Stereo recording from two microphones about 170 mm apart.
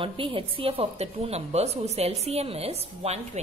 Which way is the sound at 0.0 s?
30° right (ahead or behind).